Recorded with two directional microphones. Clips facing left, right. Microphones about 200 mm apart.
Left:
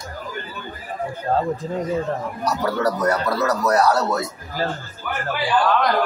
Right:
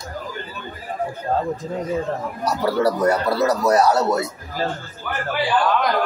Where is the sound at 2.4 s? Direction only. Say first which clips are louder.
Right 2 dB; 30° right (ahead or behind).